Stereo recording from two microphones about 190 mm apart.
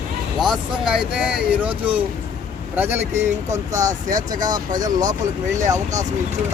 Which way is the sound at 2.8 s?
10° right (ahead or behind).